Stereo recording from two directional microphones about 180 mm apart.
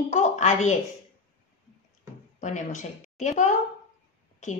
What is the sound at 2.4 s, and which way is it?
A woman's voice, 40° left (ahead or behind).